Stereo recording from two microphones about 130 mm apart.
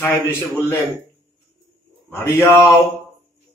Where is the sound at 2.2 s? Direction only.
25° left (ahead or behind).